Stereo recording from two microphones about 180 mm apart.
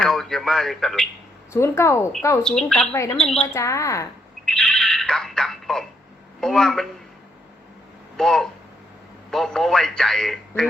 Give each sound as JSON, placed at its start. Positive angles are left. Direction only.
{"t": 0.0, "sound": "a man's voice", "side_deg": 0}
{"t": 1.5, "sound": "a woman's voice", "side_deg": 15}
{"t": 2.4, "sound": "a man's voice", "side_deg": 5}
{"t": 3.4, "sound": "a woman's voice", "side_deg": 15}
{"t": 4.4, "sound": "a sound", "side_deg": 5}
{"t": 6.4, "sound": "a man's voice", "side_deg": 5}
{"t": 8.1, "sound": "a man's voice", "side_deg": 5}